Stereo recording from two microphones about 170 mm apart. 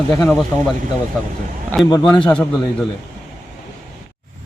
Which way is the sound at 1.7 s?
10° left (ahead or behind).